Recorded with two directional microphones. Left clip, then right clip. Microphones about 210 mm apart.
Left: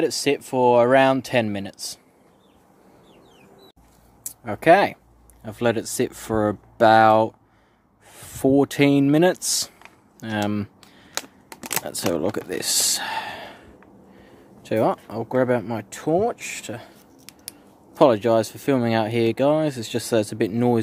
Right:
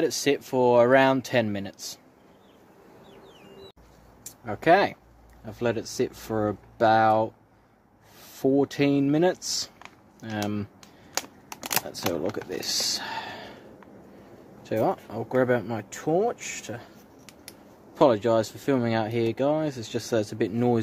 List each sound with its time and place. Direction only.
0.0 s speech: 20° left (ahead or behind)
4.2 s speech: 35° left (ahead or behind)
10.8 s a sound: 5° left (ahead or behind)
12.3 s speech: 35° left (ahead or behind)
14.6 s speech: 30° left (ahead or behind)